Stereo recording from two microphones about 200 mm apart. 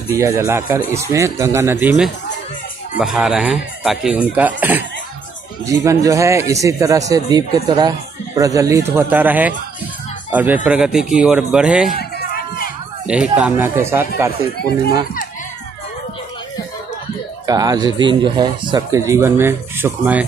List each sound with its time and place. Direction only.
0.1 s speech: 15° right (ahead or behind)
11.9 s a sound: 50° left (ahead or behind)
13.0 s speech: 5° right (ahead or behind)
17.5 s speech: 20° right (ahead or behind)